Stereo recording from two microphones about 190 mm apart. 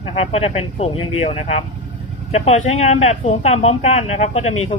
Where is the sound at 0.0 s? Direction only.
30° left (ahead or behind).